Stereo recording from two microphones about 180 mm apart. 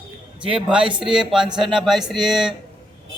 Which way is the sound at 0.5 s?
5° right (ahead or behind).